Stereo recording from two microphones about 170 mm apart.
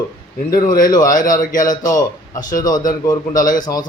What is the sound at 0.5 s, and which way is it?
Speech, 55° left (ahead or behind).